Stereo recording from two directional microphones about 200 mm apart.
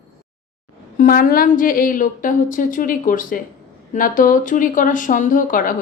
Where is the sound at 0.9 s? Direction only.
45° left (ahead or behind).